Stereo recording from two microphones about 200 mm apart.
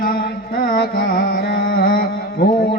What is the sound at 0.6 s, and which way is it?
Carnatic music, 45° left (ahead or behind).